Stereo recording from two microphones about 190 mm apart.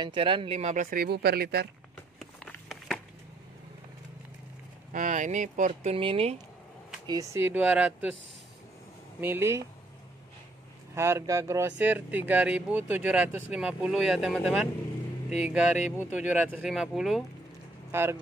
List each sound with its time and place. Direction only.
0.0 s speech: 25° right (ahead or behind); by 1.7 s 55° right (ahead or behind)
2.1 s a sound: centre (ahead or behind)
4.9 s speech: 40° right (ahead or behind)
7.1 s speech: 15° right (ahead or behind)
9.2 s speech: 15° right (ahead or behind)
11.0 s speech: 15° right (ahead or behind)